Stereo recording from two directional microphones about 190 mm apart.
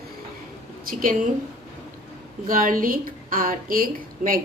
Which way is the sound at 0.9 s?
45° right (ahead or behind).